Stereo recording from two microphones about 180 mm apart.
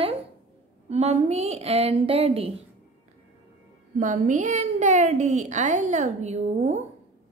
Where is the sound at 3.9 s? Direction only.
45° right (ahead or behind).